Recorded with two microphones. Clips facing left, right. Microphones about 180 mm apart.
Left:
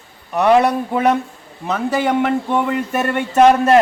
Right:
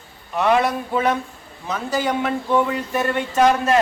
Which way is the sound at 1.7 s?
60° left (ahead or behind).